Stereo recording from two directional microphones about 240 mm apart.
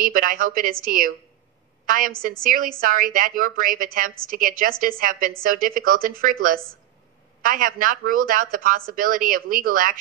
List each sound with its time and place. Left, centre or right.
0.0 s speech: right